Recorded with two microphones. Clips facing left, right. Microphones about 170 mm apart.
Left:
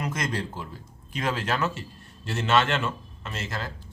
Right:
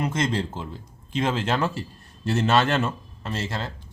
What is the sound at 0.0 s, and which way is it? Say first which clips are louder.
Speech: right 5 dB; 25° right (ahead or behind).